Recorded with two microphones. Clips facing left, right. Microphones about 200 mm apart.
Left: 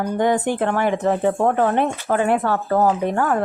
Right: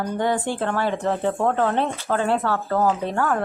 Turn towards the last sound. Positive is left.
turn(degrees=15)  # may be behind; listen again after turning